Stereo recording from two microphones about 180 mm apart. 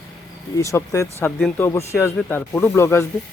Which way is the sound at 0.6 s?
15° left (ahead or behind).